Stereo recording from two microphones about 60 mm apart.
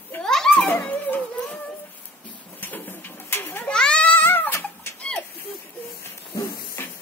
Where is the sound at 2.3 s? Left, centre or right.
Left.